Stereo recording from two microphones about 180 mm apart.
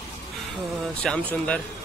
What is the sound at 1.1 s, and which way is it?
Speech, centre (ahead or behind).